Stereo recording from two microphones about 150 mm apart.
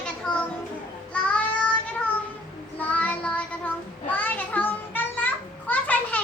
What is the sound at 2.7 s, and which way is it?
Child singing, 10° left (ahead or behind).